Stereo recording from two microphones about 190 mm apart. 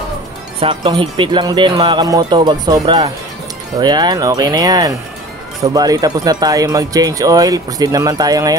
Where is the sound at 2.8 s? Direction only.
30° right (ahead or behind).